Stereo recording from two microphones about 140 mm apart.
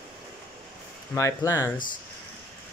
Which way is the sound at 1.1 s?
20° left (ahead or behind).